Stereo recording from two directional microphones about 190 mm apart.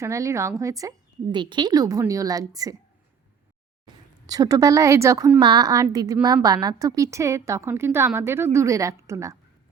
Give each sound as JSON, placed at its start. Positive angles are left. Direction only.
{"t": 0.0, "sound": "a woman's voice", "side_deg": -15}
{"t": 4.3, "sound": "a woman's voice", "side_deg": -20}